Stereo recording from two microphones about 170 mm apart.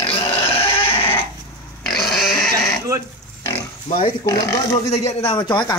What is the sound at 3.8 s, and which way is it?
Speech, 35° left (ahead or behind).